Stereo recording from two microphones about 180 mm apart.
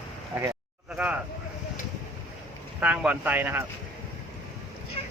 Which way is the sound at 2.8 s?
10° right (ahead or behind).